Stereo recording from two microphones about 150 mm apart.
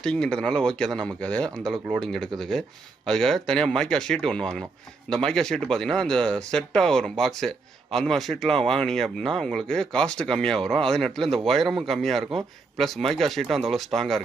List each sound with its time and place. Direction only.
0.0 s speech: 5° left (ahead or behind)